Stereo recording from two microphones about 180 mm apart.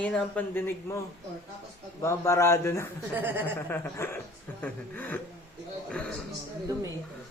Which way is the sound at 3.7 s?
10° left (ahead or behind).